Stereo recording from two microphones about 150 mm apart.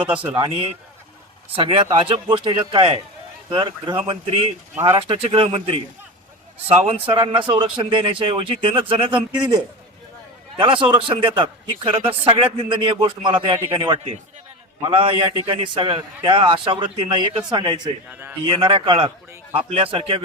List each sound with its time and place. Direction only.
0.0 s a man's voice: 10° right (ahead or behind)
1.5 s a man's voice: 40° right (ahead or behind)
4.7 s speech: 15° right (ahead or behind)
4.9 s a man's voice: 40° right (ahead or behind)
10.6 s a man's voice: 35° right (ahead or behind)
14.8 s a man's voice: 35° right (ahead or behind)